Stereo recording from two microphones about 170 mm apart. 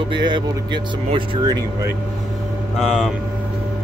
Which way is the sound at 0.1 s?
25° right (ahead or behind).